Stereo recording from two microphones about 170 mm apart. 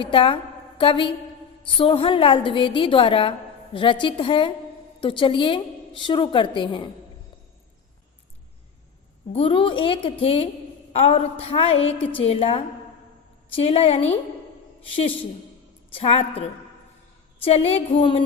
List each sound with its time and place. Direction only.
0.0 s a woman's voice: 30° left (ahead or behind)
9.3 s a woman's voice: 30° left (ahead or behind)
17.4 s a woman's voice: 35° left (ahead or behind)